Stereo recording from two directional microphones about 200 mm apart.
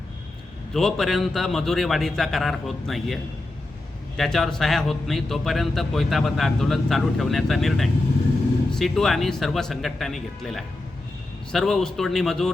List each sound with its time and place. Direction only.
0.7 s speech: centre (ahead or behind)
4.2 s speech: centre (ahead or behind)